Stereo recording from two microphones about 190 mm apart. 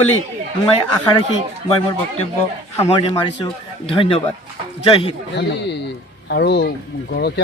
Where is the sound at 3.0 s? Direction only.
25° left (ahead or behind).